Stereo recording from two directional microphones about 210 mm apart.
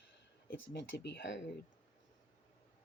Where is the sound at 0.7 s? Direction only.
55° left (ahead or behind).